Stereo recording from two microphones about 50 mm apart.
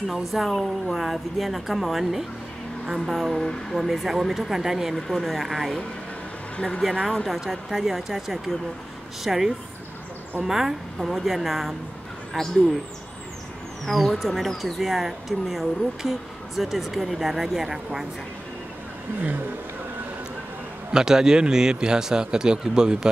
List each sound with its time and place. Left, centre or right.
0.1 s speech: centre
3.3 s speech: centre
3.8 s speech: centre
4.9 s speech: centre
6.5 s speech: centre
6.8 s a man's voice: centre
13.8 s speech: centre
20.9 s a man's voice: centre